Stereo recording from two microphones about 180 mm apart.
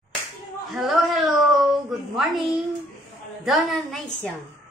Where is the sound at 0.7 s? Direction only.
Centre (ahead or behind).